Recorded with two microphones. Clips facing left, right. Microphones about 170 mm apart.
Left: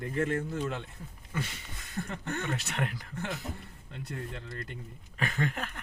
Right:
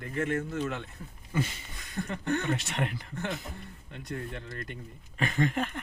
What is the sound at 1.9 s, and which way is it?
Speech, 5° left (ahead or behind).